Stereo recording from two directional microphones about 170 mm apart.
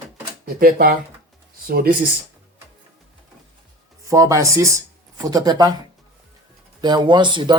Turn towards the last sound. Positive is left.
turn(degrees=-25)  # may be behind; listen again after turning